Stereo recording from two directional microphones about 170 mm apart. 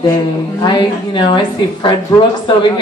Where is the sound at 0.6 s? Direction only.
25° left (ahead or behind).